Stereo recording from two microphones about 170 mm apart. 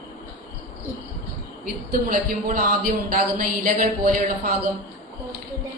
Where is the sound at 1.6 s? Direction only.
60° right (ahead or behind).